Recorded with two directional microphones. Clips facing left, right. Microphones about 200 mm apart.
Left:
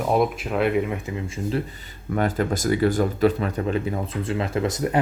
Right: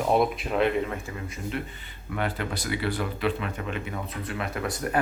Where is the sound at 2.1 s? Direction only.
40° left (ahead or behind).